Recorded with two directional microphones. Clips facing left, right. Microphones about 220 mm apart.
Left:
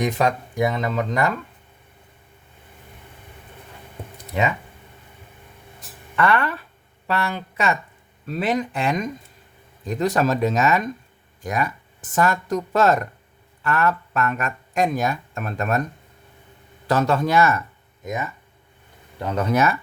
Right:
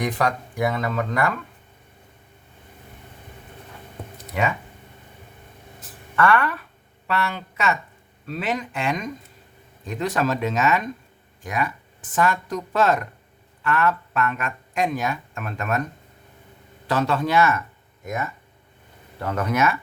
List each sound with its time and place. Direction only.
0.0 s speech: 20° left (ahead or behind)
6.1 s speech: 20° left (ahead or behind)
7.1 s speech: 35° left (ahead or behind)
16.8 s speech: 45° left (ahead or behind)
18.0 s speech: 20° left (ahead or behind)